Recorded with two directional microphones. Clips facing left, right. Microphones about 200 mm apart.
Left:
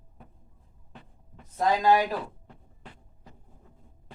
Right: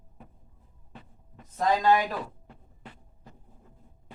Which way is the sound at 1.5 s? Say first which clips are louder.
Left 1 dB; 10° left (ahead or behind).